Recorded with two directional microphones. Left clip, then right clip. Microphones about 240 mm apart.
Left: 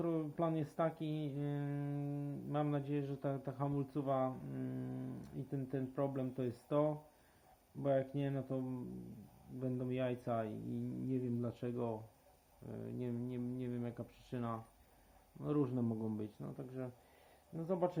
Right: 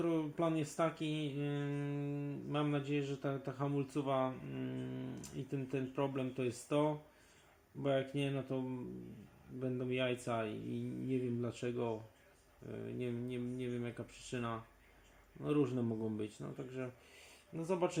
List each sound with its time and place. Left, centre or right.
0.0 s speech: centre